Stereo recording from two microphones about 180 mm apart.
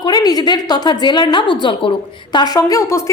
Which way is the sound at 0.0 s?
20° left (ahead or behind).